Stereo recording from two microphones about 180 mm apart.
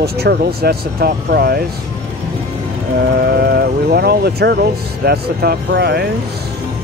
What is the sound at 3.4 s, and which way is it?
Speech, 65° right (ahead or behind).